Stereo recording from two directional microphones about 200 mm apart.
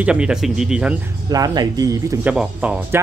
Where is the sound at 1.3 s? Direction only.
20° right (ahead or behind).